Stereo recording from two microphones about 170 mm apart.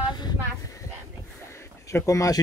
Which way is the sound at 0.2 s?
25° left (ahead or behind).